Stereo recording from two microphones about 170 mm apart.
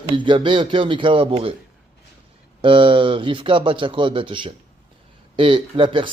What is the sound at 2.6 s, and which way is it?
Speech, 30° right (ahead or behind).